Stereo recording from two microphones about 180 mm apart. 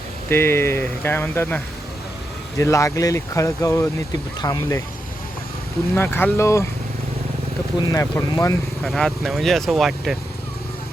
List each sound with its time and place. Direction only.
0.3 s speech: 15° left (ahead or behind)
5.9 s speech: 10° left (ahead or behind)
7.8 s speech: 20° left (ahead or behind)
8.8 s speech: centre (ahead or behind)